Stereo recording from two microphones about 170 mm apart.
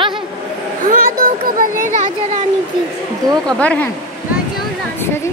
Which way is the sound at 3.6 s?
10° left (ahead or behind).